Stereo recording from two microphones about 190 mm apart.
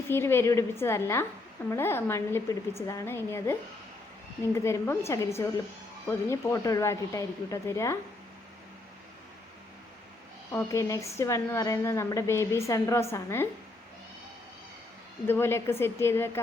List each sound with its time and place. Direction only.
0.1 s a woman's voice: 10° left (ahead or behind)
10.5 s a woman's voice: 15° left (ahead or behind)
15.3 s a woman's voice: 10° left (ahead or behind)